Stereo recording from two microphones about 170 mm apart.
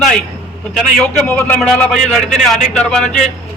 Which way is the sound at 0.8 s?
5° left (ahead or behind).